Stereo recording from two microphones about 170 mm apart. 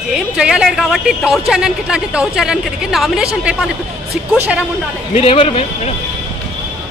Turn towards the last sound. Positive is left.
turn(degrees=35)  # may be behind; listen again after turning